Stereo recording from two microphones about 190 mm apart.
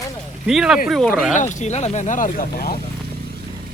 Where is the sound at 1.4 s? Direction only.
40° left (ahead or behind).